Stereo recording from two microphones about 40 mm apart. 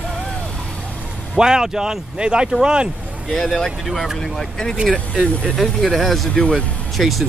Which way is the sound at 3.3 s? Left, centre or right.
Centre.